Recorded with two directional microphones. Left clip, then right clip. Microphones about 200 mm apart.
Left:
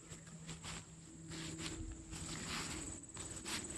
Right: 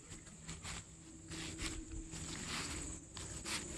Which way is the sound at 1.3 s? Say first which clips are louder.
Right 2 dB; 30° right (ahead or behind).